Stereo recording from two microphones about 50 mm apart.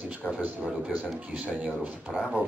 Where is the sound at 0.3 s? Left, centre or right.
Right.